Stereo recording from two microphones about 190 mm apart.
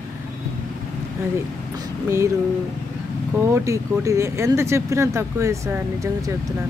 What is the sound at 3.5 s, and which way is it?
Speech, 15° right (ahead or behind).